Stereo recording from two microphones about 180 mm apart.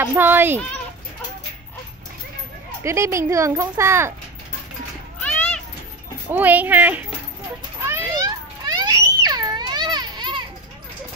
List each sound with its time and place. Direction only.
0.1 s speech: 10° right (ahead or behind)
2.8 s speech: 15° right (ahead or behind)
6.2 s speech: 10° right (ahead or behind)
7.8 s a sound: 15° right (ahead or behind)